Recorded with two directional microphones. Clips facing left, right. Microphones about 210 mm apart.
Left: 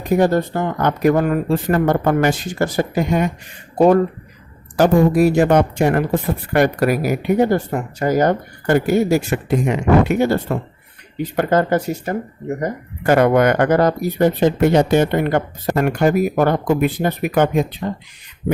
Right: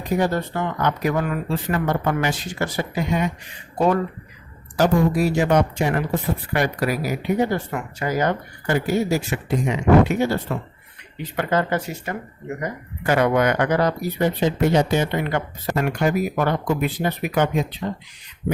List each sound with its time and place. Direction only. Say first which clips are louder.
0.0 s speech: left 6 dB; 50° left (ahead or behind)
4.8 s speech: left 5 dB; 55° left (ahead or behind)